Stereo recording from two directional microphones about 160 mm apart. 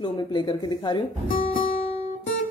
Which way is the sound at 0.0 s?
30° left (ahead or behind).